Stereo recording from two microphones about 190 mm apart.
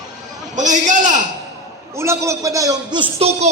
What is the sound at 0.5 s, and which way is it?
Speech, 40° right (ahead or behind).